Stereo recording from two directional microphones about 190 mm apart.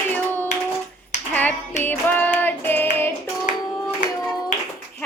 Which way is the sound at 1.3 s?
10° left (ahead or behind).